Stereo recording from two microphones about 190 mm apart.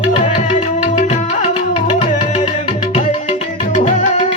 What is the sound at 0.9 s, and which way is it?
Music, 35° left (ahead or behind).